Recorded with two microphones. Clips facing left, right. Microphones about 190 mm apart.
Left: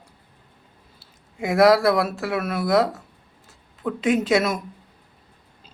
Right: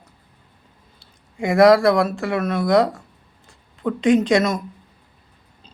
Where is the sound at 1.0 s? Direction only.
5° left (ahead or behind).